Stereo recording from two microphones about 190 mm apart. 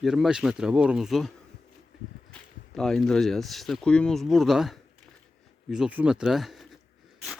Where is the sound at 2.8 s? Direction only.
5° left (ahead or behind).